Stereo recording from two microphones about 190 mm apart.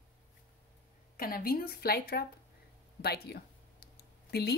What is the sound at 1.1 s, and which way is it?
A woman's voice, 50° left (ahead or behind).